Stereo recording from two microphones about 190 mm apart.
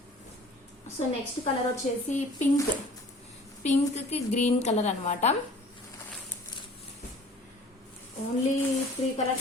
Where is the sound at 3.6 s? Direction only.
35° left (ahead or behind).